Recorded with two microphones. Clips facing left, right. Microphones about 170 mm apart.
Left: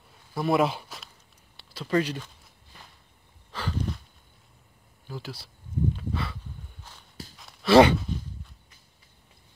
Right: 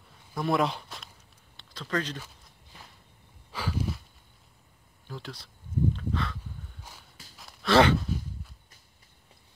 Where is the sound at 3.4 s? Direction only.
10° right (ahead or behind).